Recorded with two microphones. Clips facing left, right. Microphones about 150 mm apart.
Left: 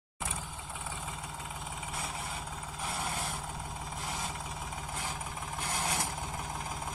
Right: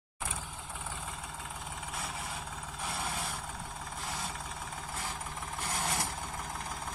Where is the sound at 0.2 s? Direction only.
Centre (ahead or behind).